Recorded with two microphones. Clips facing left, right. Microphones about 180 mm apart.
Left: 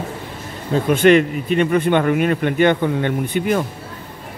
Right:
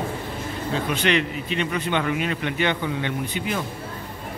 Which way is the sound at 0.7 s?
50° left (ahead or behind).